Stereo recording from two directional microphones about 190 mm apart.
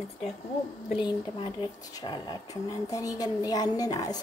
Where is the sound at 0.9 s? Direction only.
25° left (ahead or behind).